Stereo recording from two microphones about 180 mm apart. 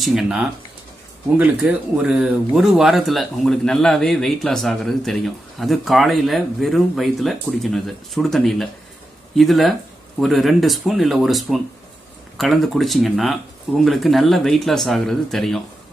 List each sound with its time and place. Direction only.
0.0 s speech: centre (ahead or behind)